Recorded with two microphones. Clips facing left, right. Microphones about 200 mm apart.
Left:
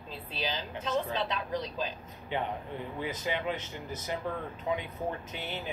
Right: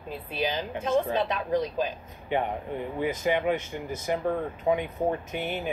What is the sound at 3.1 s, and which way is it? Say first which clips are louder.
A woman's voice: right 8 dB; 55° right (ahead or behind).